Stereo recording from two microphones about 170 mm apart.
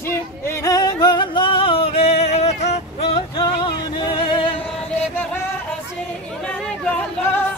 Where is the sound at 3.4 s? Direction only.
25° left (ahead or behind).